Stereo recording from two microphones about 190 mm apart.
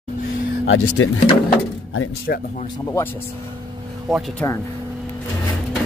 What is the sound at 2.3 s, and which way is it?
Speech, 55° left (ahead or behind).